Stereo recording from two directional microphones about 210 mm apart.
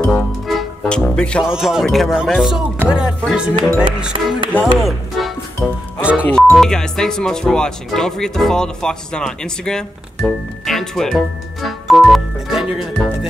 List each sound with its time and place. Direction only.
0.0 s speech: centre (ahead or behind)
4.1 s speech: 25° right (ahead or behind)
4.7 s music: centre (ahead or behind)
6.2 s speech: 5° left (ahead or behind)